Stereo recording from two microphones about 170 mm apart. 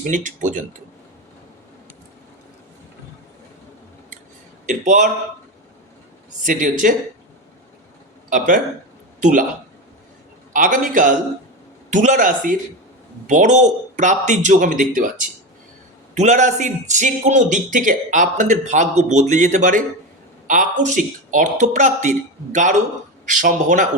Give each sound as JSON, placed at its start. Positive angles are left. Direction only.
{"t": 0.0, "sound": "a man's voice", "side_deg": -50}
{"t": 4.6, "sound": "a man's voice", "side_deg": -50}
{"t": 6.4, "sound": "a man's voice", "side_deg": -50}
{"t": 8.3, "sound": "a man's voice", "side_deg": -50}
{"t": 10.5, "sound": "a man's voice", "side_deg": -50}